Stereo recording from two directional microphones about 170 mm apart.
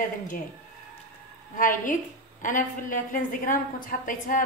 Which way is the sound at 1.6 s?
50° left (ahead or behind).